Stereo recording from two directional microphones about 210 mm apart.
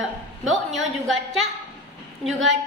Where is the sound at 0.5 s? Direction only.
Centre (ahead or behind).